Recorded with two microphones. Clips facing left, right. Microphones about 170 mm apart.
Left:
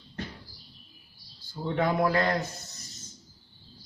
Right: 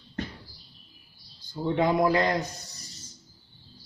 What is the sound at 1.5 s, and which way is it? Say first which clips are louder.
A man's voice: right 3 dB; 15° right (ahead or behind).